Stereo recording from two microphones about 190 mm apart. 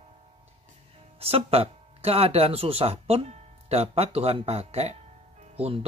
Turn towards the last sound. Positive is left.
turn(degrees=-30)  # may be behind; listen again after turning